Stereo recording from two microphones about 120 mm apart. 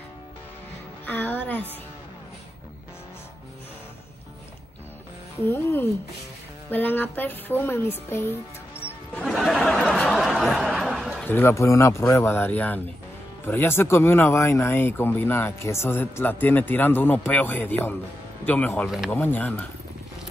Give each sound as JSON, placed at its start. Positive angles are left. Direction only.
{"t": 1.0, "sound": "music", "side_deg": 15}
{"t": 5.4, "sound": "speech", "side_deg": 20}
{"t": 9.2, "sound": "a sound", "side_deg": 0}
{"t": 11.2, "sound": "speech", "side_deg": 20}